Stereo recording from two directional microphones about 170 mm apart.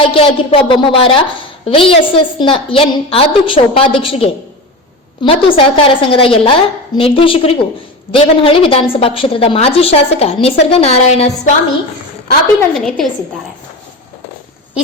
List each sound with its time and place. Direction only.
0.0 s a woman's voice: 30° left (ahead or behind)
12.7 s a woman's voice: 5° left (ahead or behind)